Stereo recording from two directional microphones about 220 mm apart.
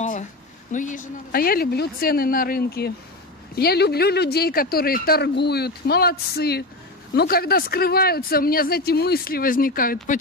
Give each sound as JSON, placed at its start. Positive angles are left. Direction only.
{"t": 0.7, "sound": "speech", "side_deg": 35}